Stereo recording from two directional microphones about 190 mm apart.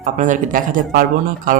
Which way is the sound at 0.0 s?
40° right (ahead or behind).